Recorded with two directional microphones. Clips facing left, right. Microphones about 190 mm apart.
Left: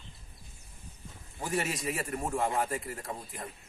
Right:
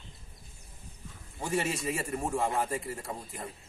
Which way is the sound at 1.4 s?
Centre (ahead or behind).